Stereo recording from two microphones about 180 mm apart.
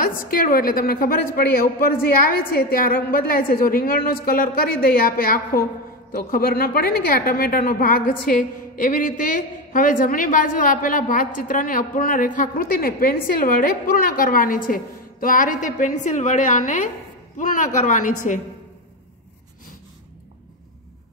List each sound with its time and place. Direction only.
0.0 s a woman's voice: 50° left (ahead or behind)